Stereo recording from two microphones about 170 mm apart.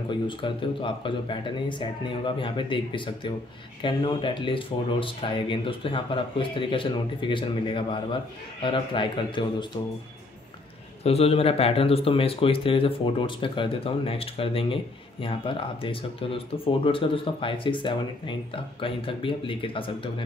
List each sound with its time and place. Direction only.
0.1 s speech: 30° left (ahead or behind)
11.1 s speech: 35° left (ahead or behind)